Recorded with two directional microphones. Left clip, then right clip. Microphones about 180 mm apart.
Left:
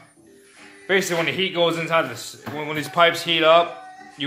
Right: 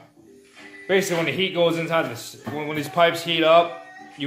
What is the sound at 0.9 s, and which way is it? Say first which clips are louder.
Speech: left 1 dB; 15° left (ahead or behind).